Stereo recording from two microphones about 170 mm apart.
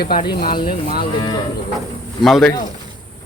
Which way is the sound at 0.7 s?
55° left (ahead or behind).